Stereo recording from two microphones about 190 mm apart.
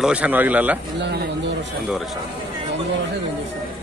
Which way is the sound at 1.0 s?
60° right (ahead or behind).